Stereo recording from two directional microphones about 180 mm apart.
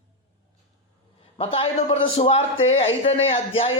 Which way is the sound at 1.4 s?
30° left (ahead or behind).